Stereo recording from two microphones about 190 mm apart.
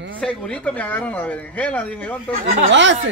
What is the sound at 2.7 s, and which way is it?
Speech, 70° right (ahead or behind).